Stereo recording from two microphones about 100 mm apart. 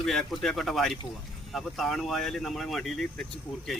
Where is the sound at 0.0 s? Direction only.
Centre (ahead or behind).